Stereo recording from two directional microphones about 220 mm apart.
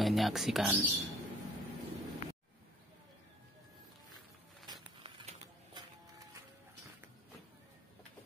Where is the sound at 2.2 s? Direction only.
40° left (ahead or behind).